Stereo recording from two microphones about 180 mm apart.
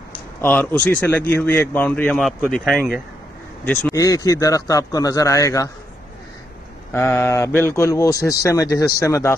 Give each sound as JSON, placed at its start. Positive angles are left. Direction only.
{"t": 0.4, "sound": "a man's voice", "side_deg": 10}
{"t": 3.6, "sound": "a man's voice", "side_deg": 10}
{"t": 6.9, "sound": "a man's voice", "side_deg": 15}